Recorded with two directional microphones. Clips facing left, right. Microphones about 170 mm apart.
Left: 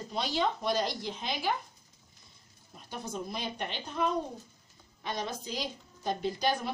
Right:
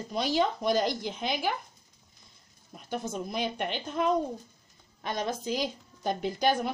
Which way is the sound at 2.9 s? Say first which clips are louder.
Right 5 dB; 55° right (ahead or behind).